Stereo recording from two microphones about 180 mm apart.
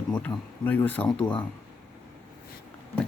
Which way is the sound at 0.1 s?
10° left (ahead or behind).